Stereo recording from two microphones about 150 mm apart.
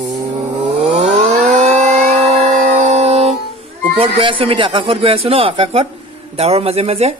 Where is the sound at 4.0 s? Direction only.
35° right (ahead or behind).